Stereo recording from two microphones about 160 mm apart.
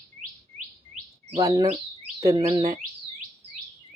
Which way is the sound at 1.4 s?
20° right (ahead or behind).